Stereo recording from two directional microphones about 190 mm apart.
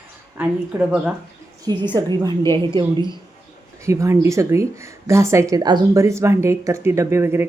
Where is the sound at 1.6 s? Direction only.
25° right (ahead or behind).